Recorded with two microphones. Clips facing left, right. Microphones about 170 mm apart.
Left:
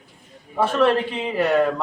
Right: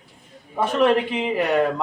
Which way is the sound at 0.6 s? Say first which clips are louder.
Even; 15° right (ahead or behind).